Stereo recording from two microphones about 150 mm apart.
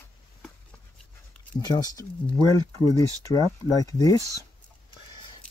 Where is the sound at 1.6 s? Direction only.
25° left (ahead or behind).